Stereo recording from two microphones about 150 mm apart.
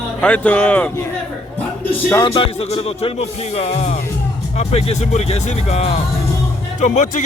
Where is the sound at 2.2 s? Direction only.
35° left (ahead or behind).